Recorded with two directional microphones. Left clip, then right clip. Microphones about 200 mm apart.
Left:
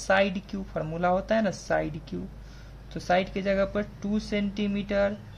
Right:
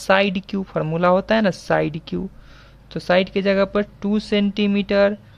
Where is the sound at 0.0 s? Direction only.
55° right (ahead or behind).